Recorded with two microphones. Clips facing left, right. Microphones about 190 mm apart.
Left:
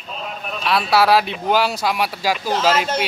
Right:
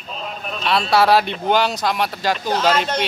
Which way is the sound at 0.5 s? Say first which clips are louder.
Even; 5° left (ahead or behind).